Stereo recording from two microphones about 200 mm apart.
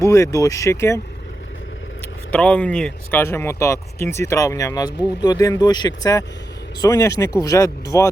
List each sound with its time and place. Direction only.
0.0 s speech: 15° left (ahead or behind)
2.3 s speech: 5° left (ahead or behind)